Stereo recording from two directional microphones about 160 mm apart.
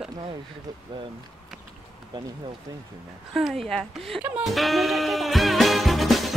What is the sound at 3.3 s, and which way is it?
Speech, centre (ahead or behind).